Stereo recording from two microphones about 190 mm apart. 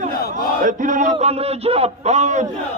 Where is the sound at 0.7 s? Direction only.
45° right (ahead or behind).